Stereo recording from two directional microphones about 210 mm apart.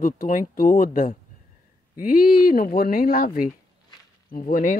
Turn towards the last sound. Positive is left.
turn(degrees=40)  # may be behind; listen again after turning